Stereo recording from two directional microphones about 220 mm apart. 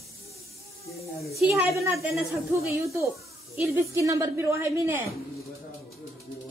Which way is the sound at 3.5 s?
5° right (ahead or behind).